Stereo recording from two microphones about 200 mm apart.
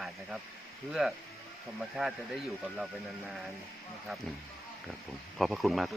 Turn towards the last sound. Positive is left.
turn(degrees=0)  # may be behind; listen again after turning